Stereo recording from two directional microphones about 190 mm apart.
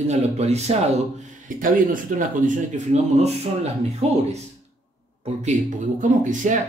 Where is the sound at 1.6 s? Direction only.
45° right (ahead or behind).